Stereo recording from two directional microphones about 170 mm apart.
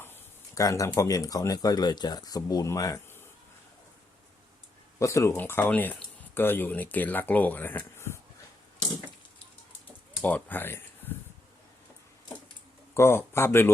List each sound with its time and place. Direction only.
0.0 s speech: 15° left (ahead or behind)
4.9 s speech: 15° left (ahead or behind)
10.2 s speech: 10° left (ahead or behind)
12.9 s speech: 15° left (ahead or behind)